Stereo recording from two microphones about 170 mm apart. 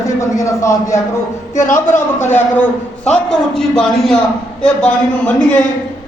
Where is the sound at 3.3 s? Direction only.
Centre (ahead or behind).